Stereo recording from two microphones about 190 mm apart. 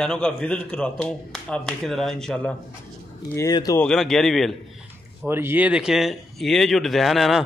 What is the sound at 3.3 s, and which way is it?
Speech, 20° left (ahead or behind).